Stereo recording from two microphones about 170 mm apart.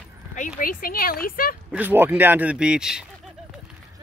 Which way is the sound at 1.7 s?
10° right (ahead or behind).